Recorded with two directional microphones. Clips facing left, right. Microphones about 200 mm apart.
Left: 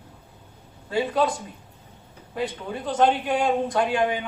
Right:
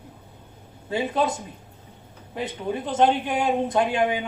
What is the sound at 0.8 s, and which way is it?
A man's voice, 20° right (ahead or behind).